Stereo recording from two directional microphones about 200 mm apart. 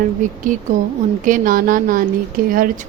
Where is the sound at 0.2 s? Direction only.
40° right (ahead or behind).